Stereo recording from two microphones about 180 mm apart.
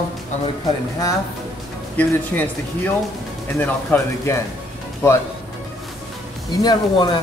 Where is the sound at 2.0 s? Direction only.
10° left (ahead or behind).